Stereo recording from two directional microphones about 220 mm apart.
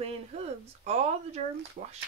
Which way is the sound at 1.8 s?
40° right (ahead or behind).